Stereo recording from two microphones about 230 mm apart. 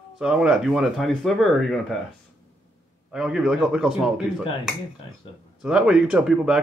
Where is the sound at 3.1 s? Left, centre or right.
Centre.